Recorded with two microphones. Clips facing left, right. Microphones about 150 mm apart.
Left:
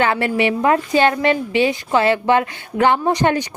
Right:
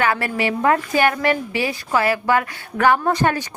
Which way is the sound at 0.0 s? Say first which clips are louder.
Left 3 dB; 25° left (ahead or behind).